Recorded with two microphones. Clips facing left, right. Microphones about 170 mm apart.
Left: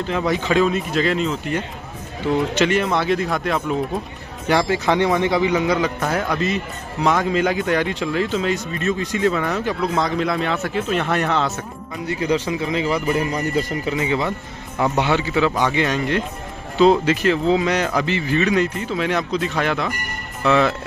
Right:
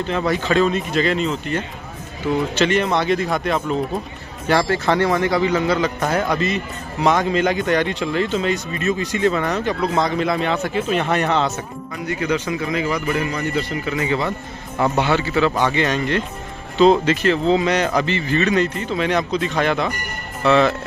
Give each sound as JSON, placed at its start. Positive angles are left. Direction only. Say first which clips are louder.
{"t": 0.1, "sound": "a man's voice", "louder": "even", "side_deg": 15}
{"t": 4.5, "sound": "speech", "louder": "even", "side_deg": 15}
{"t": 6.0, "sound": "a man's voice", "louder": "right 1 dB", "side_deg": 0}
{"t": 12.1, "sound": "a man's voice", "louder": "left 1 dB", "side_deg": 30}
{"t": 13.8, "sound": "a man's voice", "louder": "even", "side_deg": 20}